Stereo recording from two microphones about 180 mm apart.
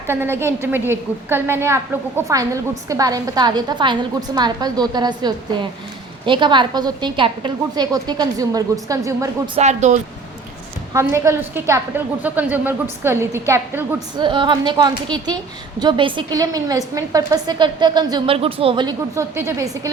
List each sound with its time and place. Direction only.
0.1 s a woman's voice: 10° right (ahead or behind)
9.6 s speech: 40° right (ahead or behind)
10.9 s a woman's voice: 15° right (ahead or behind)
14.3 s a woman's voice: 25° right (ahead or behind)